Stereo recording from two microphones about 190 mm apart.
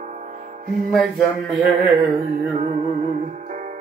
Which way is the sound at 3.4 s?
40° right (ahead or behind).